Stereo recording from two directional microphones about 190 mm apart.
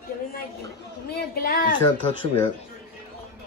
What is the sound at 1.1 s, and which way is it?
Speech, 55° left (ahead or behind).